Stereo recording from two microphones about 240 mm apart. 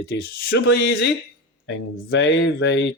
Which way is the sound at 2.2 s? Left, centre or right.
Left.